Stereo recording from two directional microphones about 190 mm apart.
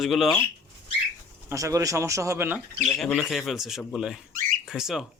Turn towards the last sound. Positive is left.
turn(degrees=-5)  # may be behind; listen again after turning